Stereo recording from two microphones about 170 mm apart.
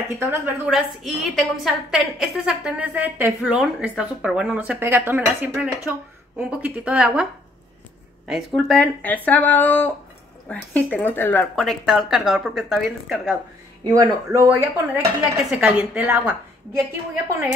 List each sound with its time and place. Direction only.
0.1 s a woman's voice: 15° right (ahead or behind)
0.7 s a woman's voice: centre (ahead or behind)
8.3 s speech: centre (ahead or behind)
11.6 s speech: centre (ahead or behind)
13.9 s a woman's voice: 20° right (ahead or behind)
15.6 s speech: 5° right (ahead or behind)